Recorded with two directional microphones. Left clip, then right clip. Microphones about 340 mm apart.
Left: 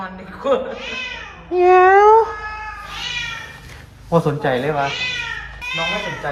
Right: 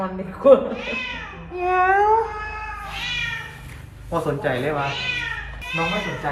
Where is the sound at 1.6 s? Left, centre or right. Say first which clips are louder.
Left 7 dB; left.